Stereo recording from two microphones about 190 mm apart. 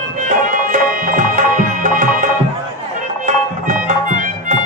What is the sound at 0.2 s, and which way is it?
Music, 45° right (ahead or behind).